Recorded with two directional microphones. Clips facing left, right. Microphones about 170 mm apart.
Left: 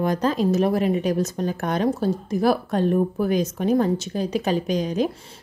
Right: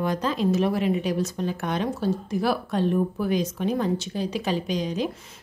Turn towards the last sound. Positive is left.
turn(degrees=45)  # may be behind; listen again after turning